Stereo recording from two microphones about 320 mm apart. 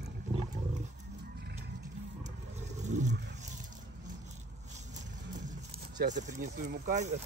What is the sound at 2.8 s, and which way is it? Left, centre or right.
Roar, right.